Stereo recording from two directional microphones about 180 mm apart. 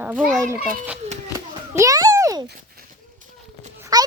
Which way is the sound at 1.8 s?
20° right (ahead or behind).